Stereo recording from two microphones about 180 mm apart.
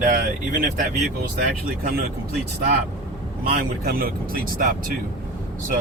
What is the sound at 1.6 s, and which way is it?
Speech, 55° right (ahead or behind).